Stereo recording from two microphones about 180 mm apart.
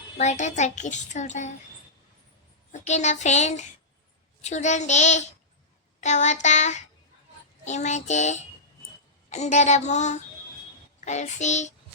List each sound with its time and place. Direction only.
0.2 s a child's voice: 40° left (ahead or behind)
2.7 s a child's voice: 40° left (ahead or behind)